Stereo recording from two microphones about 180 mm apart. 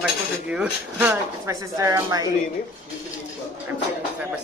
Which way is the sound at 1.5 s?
20° right (ahead or behind).